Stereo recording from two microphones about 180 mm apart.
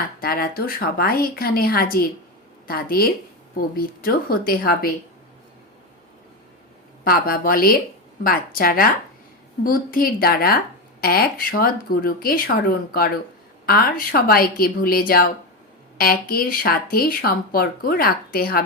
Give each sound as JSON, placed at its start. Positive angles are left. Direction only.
{"t": 0.2, "sound": "speech", "side_deg": 55}
{"t": 7.0, "sound": "a woman's voice", "side_deg": 55}
{"t": 13.7, "sound": "speech", "side_deg": 55}